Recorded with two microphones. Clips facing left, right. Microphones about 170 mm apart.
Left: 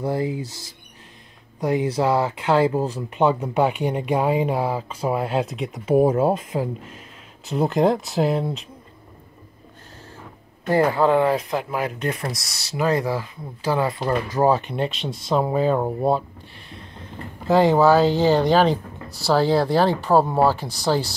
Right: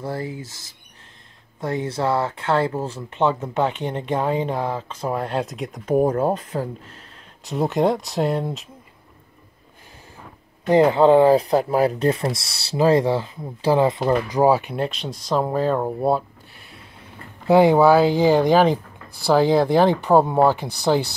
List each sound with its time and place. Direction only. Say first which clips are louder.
0.0 s speech: left 5 dB; 15° left (ahead or behind)
1.6 s speech: left 3 dB; 10° left (ahead or behind)
7.4 s speech: left 1 dB; centre (ahead or behind)
10.7 s speech: right 4 dB; 20° right (ahead or behind)
13.9 s speech: right 3 dB; 15° right (ahead or behind)